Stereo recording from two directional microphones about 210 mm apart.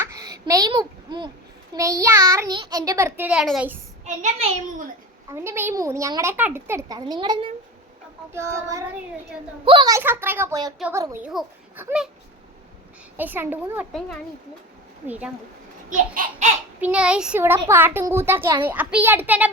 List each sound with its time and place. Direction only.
0.0 s a sound: 15° right (ahead or behind)
1.7 s a child's voice: 15° right (ahead or behind)
4.0 s a child's voice: 35° right (ahead or behind)
5.3 s a child's voice: 10° right (ahead or behind)
10.8 s a child's voice: 5° right (ahead or behind)
13.1 s a child's voice: 10° right (ahead or behind)
15.0 s a child's voice: 5° right (ahead or behind)
15.9 s a child's voice: 40° right (ahead or behind)
16.8 s a child's voice: 5° right (ahead or behind)